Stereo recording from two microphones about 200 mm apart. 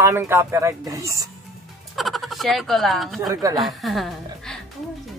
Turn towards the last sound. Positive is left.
turn(degrees=0)  # may be behind; listen again after turning